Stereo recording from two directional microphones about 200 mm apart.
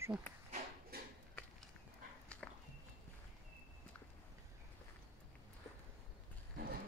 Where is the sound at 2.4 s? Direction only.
5° left (ahead or behind).